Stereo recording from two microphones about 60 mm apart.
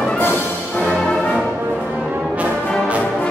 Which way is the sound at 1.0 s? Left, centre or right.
Centre.